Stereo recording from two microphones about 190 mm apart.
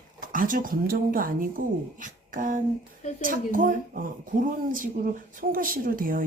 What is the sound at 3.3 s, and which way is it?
Speech, 45° right (ahead or behind).